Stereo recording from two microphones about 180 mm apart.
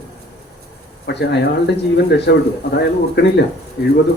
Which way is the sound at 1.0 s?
70° left (ahead or behind).